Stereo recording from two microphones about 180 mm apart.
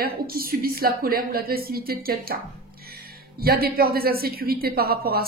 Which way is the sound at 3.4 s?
55° right (ahead or behind).